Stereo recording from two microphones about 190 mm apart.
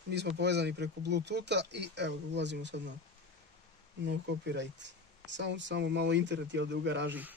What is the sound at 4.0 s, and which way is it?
Speech, 65° right (ahead or behind).